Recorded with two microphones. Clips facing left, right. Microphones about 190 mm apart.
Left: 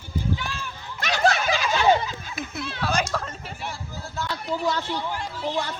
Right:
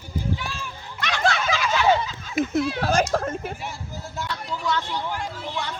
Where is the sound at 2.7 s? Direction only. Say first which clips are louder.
Right 4 dB; 45° right (ahead or behind).